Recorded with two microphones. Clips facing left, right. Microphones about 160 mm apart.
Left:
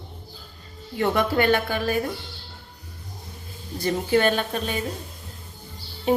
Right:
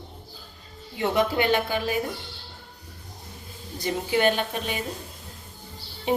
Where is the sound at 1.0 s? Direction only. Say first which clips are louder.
Left 2 dB; 15° right (ahead or behind).